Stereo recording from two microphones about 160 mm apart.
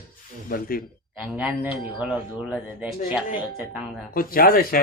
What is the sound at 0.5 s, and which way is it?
Speech, 65° left (ahead or behind).